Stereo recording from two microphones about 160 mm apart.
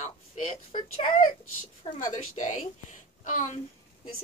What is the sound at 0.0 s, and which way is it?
Speech, 50° left (ahead or behind).